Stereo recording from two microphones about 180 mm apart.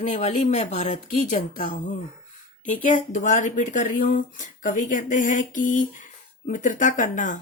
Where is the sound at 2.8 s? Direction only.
45° left (ahead or behind).